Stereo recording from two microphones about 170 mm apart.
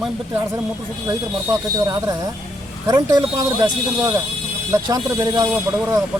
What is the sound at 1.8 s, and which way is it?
Speech, 20° right (ahead or behind).